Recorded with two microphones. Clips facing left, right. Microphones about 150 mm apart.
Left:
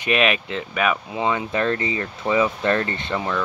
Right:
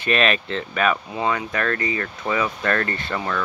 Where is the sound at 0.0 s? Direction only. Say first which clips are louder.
Even; 15° left (ahead or behind).